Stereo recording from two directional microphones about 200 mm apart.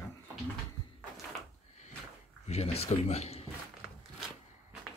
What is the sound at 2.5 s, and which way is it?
Speech, 30° left (ahead or behind).